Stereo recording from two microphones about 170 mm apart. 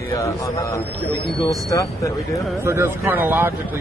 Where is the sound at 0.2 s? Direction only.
15° left (ahead or behind).